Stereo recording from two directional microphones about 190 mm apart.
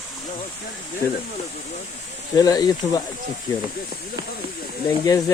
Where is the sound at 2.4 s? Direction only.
20° left (ahead or behind).